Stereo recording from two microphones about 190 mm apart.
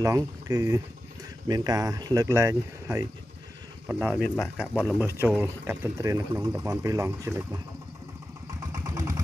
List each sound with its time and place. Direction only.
0.0 s speech: 15° right (ahead or behind)
8.5 s vehicle: 20° right (ahead or behind)